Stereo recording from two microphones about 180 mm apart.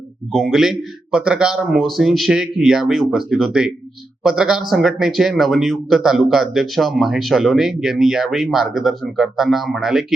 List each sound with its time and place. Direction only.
0.3 s speech: centre (ahead or behind)